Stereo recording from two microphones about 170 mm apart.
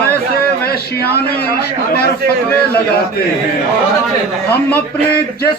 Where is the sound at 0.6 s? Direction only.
65° left (ahead or behind).